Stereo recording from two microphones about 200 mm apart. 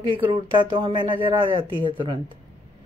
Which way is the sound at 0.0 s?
25° right (ahead or behind).